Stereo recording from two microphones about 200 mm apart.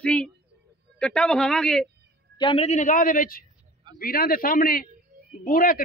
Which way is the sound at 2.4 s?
30° left (ahead or behind).